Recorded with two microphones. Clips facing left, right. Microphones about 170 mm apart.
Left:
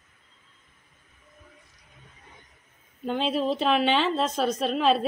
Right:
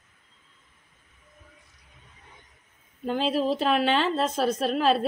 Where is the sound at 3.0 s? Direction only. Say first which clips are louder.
Right 1 dB; centre (ahead or behind).